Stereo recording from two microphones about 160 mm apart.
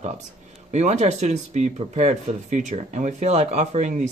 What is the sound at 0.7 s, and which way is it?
Speech, 45° right (ahead or behind).